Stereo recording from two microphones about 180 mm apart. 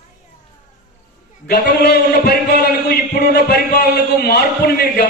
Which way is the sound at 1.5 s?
65° left (ahead or behind).